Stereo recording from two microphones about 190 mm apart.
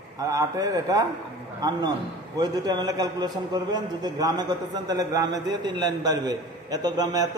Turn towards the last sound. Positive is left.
turn(degrees=-20)  # may be behind; listen again after turning